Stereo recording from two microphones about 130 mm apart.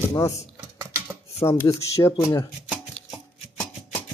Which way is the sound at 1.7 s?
25° left (ahead or behind).